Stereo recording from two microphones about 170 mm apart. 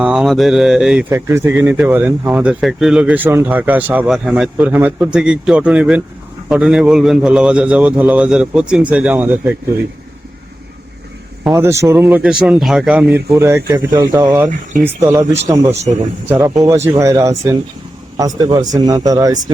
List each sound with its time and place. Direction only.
0.0 s speech: 5° right (ahead or behind)
11.5 s speech: 15° right (ahead or behind)
16.3 s speech: 20° right (ahead or behind)